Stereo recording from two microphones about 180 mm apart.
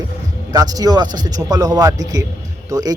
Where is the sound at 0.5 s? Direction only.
20° right (ahead or behind).